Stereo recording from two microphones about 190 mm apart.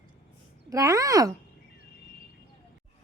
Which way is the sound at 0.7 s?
20° right (ahead or behind).